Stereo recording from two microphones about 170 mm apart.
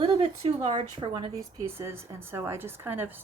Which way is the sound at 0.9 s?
25° right (ahead or behind).